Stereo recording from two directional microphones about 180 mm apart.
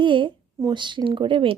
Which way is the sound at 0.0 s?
25° right (ahead or behind).